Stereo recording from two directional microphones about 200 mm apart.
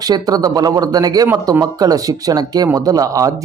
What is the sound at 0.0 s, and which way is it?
Speech, 20° right (ahead or behind).